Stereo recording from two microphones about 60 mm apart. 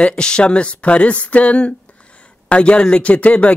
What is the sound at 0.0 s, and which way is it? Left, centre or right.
Speech, centre.